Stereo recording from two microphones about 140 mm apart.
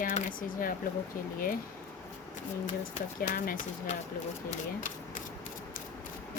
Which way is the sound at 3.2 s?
90° left.